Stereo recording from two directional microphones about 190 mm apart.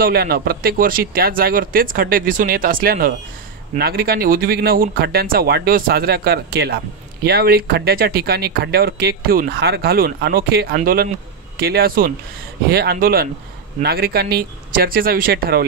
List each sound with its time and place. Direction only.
0.0 s speech: 55° right (ahead or behind)